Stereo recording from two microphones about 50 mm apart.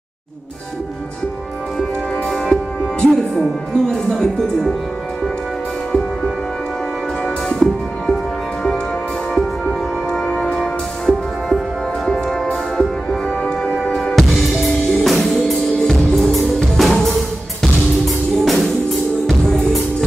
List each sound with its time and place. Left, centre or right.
1.8 s music: centre
3.3 s speech: centre
5.9 s music: centre
7.4 s music: centre
9.4 s music: centre
14.3 s music: centre